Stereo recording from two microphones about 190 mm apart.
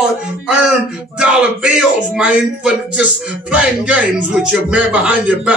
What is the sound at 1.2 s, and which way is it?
Speech, 5° right (ahead or behind).